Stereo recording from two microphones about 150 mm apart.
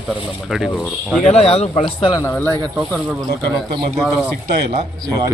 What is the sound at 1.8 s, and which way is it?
Speech, 35° left (ahead or behind).